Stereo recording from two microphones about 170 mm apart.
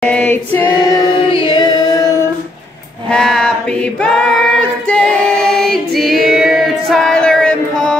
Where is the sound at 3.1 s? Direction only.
5° left (ahead or behind).